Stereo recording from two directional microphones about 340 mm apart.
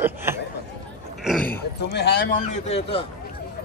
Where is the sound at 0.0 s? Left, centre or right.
Centre.